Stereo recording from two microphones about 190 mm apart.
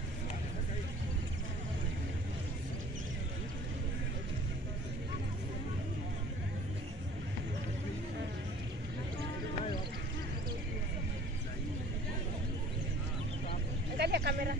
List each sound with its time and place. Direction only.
13.9 s speech: 60° right (ahead or behind)